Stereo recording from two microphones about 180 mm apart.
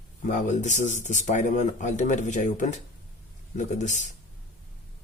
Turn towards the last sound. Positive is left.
turn(degrees=45)  # may be behind; listen again after turning